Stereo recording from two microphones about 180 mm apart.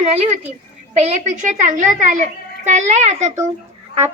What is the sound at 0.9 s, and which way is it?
A child's voice, 40° right (ahead or behind).